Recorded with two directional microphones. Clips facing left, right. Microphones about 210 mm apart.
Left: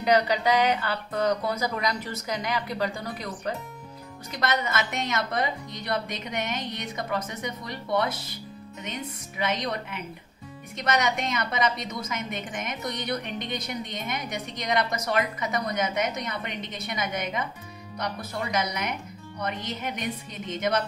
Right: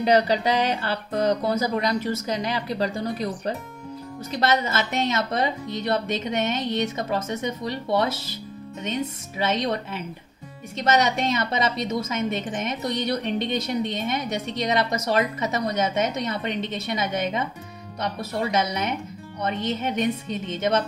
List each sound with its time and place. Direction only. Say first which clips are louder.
0.0 s a woman's voice: right 3 dB; 30° right (ahead or behind)